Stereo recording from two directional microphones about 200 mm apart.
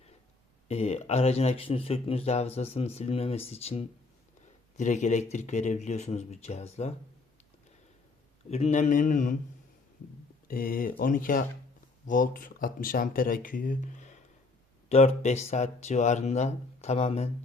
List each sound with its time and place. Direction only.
0.7 s speech: 30° left (ahead or behind)
8.4 s speech: 35° left (ahead or behind)
10.5 s speech: 45° left (ahead or behind)